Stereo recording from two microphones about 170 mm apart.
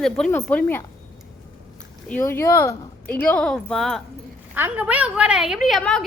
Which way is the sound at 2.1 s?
15° left (ahead or behind).